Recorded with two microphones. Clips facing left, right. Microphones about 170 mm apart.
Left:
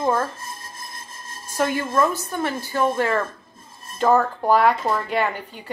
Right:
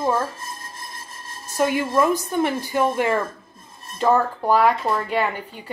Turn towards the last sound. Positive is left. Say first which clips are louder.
# even
turn(degrees=-5)  # may be behind; listen again after turning